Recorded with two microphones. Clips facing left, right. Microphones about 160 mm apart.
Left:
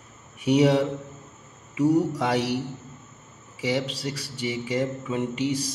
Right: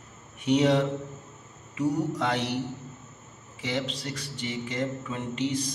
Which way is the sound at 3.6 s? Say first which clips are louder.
Left 4 dB; 10° left (ahead or behind).